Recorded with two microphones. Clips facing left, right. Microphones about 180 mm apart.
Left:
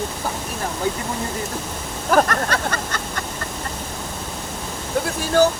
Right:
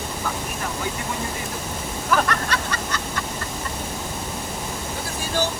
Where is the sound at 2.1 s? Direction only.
45° left (ahead or behind).